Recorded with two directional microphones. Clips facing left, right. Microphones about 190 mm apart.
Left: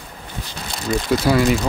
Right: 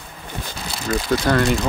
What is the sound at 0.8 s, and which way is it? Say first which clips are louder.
Speech: left 1 dB; centre (ahead or behind).